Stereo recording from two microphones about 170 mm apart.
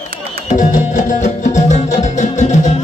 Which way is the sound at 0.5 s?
45° left (ahead or behind).